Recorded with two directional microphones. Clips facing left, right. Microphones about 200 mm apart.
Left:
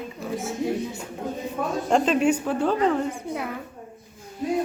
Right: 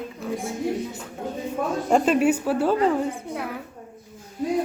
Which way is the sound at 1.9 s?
10° right (ahead or behind).